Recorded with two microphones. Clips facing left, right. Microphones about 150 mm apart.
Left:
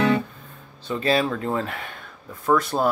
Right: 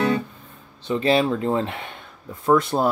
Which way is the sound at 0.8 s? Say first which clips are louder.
Right 3 dB; 20° right (ahead or behind).